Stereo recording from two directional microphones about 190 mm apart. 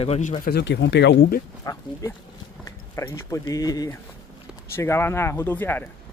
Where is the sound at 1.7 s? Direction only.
20° left (ahead or behind).